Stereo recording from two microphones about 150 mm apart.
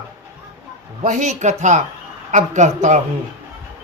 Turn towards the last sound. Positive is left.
turn(degrees=-50)  # may be behind; listen again after turning